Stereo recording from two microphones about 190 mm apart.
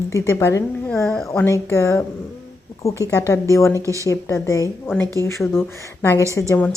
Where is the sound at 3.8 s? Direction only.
15° right (ahead or behind).